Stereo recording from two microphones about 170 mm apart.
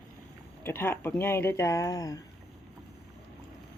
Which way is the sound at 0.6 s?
10° left (ahead or behind).